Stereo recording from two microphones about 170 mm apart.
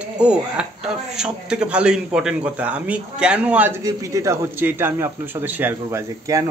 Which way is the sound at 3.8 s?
20° right (ahead or behind).